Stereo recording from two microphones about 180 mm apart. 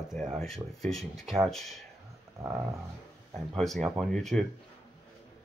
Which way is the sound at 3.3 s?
Centre (ahead or behind).